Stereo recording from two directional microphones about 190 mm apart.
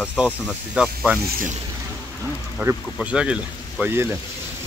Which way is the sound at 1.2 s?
45° right (ahead or behind).